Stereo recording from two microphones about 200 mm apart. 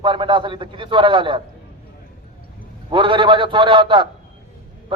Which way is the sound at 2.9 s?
25° right (ahead or behind).